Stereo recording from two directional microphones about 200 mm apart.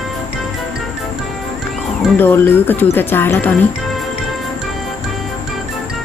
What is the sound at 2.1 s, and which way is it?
Speech, 10° left (ahead or behind).